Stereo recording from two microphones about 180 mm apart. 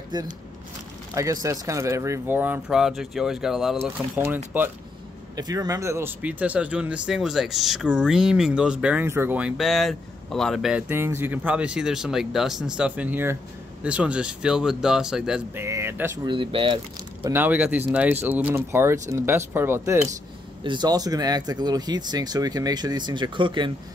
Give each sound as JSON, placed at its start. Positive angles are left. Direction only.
{"t": 0.1, "sound": "speech", "side_deg": -25}
{"t": 5.3, "sound": "speech", "side_deg": -20}
{"t": 10.9, "sound": "speech", "side_deg": -15}
{"t": 15.6, "sound": "a sound", "side_deg": -15}
{"t": 16.3, "sound": "speech", "side_deg": -30}
{"t": 17.2, "sound": "speech", "side_deg": -10}